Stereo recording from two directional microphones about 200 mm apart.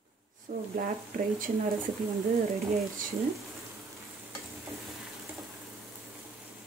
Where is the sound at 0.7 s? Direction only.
45° right (ahead or behind).